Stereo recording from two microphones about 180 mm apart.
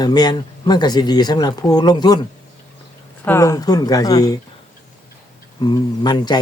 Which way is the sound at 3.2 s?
15° left (ahead or behind).